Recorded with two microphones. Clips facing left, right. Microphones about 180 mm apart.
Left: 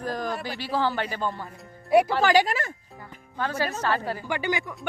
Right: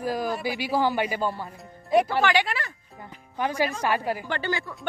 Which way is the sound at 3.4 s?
15° right (ahead or behind).